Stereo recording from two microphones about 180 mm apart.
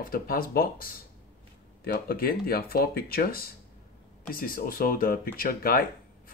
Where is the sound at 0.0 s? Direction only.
55° left (ahead or behind).